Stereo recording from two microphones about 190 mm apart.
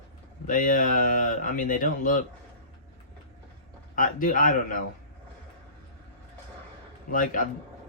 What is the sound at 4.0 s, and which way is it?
Speech, 45° left (ahead or behind).